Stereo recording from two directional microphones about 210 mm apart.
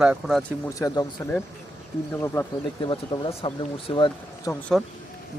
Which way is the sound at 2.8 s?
25° left (ahead or behind).